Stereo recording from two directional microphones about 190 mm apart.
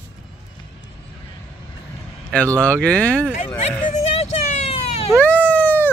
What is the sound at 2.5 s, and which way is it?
Speech, 15° right (ahead or behind).